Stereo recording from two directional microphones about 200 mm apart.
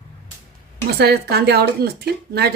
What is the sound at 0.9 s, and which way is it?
Speech, 55° right (ahead or behind).